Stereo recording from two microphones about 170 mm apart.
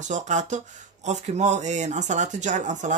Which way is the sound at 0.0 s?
45° right (ahead or behind).